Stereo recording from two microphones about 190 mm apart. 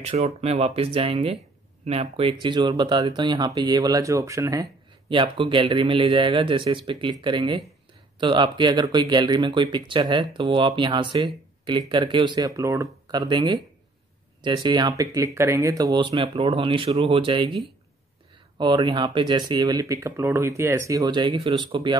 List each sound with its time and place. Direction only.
0.0 s speech: 35° right (ahead or behind); by 4.6 s 15° right (ahead or behind)
5.1 s speech: 25° right (ahead or behind)